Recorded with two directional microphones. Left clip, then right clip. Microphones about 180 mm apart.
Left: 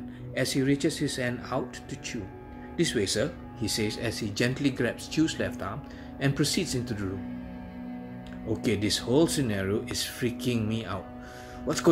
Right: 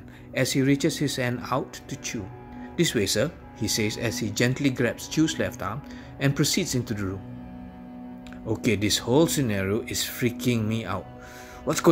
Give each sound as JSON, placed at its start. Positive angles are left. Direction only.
{"t": 0.3, "sound": "speech", "side_deg": -50}
{"t": 8.5, "sound": "speech", "side_deg": -50}